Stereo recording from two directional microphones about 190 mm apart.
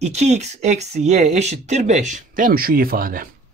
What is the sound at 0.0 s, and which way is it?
Speech, 35° right (ahead or behind).